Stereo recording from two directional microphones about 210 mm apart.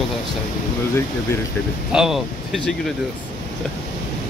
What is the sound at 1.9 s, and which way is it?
Speech, centre (ahead or behind).